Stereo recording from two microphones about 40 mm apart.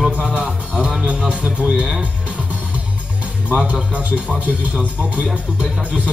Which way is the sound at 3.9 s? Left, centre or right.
Right.